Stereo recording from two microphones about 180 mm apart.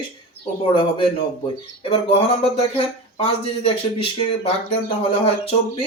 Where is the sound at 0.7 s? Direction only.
30° left (ahead or behind).